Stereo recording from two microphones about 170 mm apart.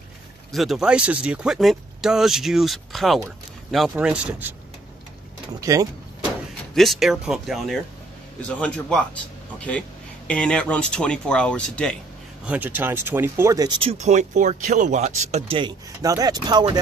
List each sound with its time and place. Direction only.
0.5 s speech: centre (ahead or behind)
5.5 s speech: 20° right (ahead or behind)
6.7 s speech: centre (ahead or behind)
12.4 s speech: 10° right (ahead or behind); by 15.7 s 35° right (ahead or behind)
16.0 s speech: 20° right (ahead or behind)